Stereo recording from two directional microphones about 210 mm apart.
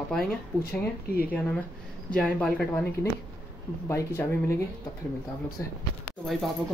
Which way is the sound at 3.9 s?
10° left (ahead or behind).